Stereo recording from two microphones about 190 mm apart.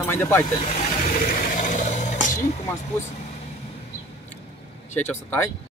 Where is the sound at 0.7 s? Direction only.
45° left (ahead or behind).